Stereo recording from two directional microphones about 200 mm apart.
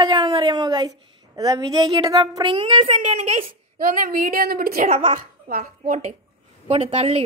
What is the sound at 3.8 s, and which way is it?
A woman's voice, 45° right (ahead or behind).